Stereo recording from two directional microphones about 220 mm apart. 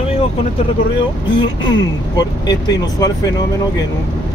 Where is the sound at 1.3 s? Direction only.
20° left (ahead or behind).